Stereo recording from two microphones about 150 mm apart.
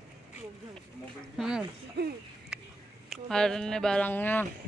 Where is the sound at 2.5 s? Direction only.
5° right (ahead or behind).